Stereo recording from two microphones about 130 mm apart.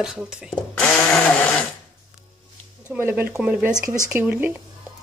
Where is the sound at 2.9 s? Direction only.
15° right (ahead or behind).